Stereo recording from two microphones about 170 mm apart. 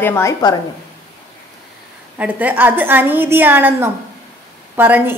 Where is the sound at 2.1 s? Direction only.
10° right (ahead or behind).